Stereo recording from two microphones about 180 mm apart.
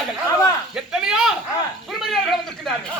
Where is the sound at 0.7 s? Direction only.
5° right (ahead or behind).